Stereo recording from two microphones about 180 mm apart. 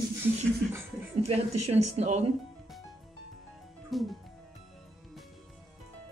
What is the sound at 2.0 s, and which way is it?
Speech, 35° right (ahead or behind).